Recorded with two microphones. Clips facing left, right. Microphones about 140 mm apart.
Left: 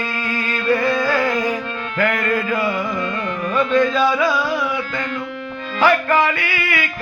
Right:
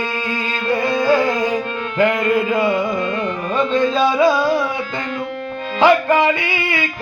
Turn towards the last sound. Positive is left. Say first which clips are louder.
# right 2 dB
turn(degrees=-25)  # may be behind; listen again after turning